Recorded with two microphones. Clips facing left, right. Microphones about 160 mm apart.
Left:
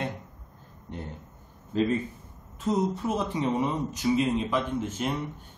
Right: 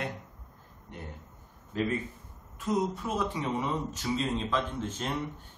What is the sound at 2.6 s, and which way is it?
A man's voice, 25° left (ahead or behind).